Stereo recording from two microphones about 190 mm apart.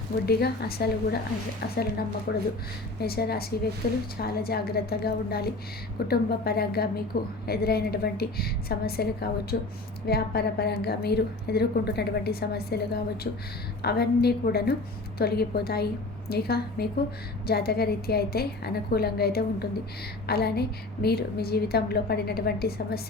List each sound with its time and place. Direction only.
0.3 s a woman's voice: 55° left (ahead or behind)